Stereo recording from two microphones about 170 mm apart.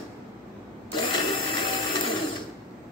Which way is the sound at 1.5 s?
30° left (ahead or behind).